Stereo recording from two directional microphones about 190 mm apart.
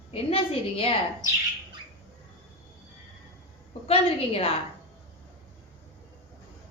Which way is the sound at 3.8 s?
30° left (ahead or behind).